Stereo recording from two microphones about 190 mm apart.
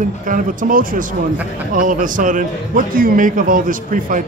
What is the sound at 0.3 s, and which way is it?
A man's voice, 45° right (ahead or behind).